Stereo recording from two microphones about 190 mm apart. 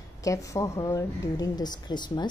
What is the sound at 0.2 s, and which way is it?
A woman's voice, 15° left (ahead or behind).